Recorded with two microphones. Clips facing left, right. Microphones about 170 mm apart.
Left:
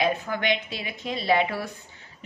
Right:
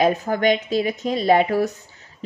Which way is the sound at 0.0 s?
40° right (ahead or behind).